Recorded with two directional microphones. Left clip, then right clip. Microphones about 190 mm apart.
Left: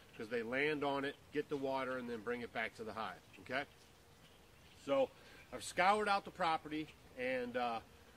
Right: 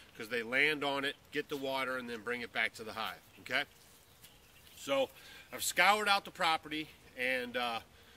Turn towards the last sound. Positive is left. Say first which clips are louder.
# right 3 dB
turn(degrees=-5)  # may be behind; listen again after turning